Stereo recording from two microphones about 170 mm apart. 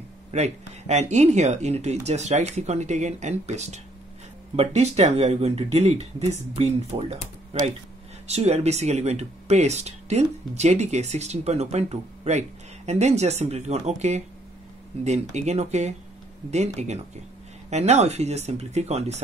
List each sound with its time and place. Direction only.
0.3 s speech: 40° right (ahead or behind)
8.3 s speech: 40° right (ahead or behind)